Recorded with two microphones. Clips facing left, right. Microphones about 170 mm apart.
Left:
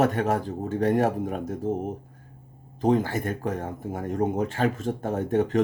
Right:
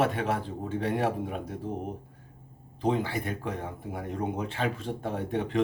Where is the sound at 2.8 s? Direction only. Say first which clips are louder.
Left 5 dB; 45° left (ahead or behind).